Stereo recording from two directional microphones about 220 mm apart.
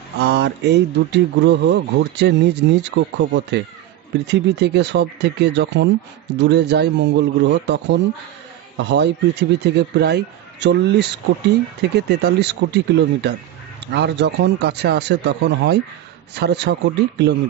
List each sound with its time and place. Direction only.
0.2 s speech: 50° right (ahead or behind)